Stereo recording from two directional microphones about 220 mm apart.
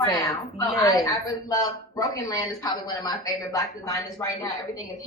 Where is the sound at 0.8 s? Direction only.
15° left (ahead or behind).